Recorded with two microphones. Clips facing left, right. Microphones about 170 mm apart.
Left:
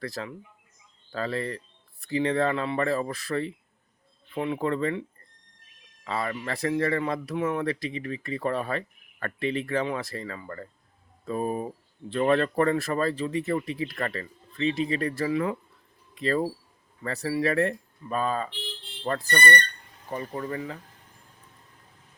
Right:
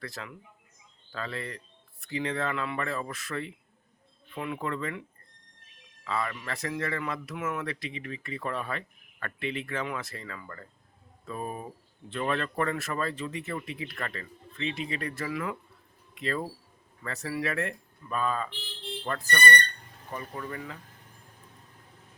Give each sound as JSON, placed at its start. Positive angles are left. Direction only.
{"t": 0.0, "sound": "speech", "side_deg": 35}
{"t": 6.1, "sound": "speech", "side_deg": 35}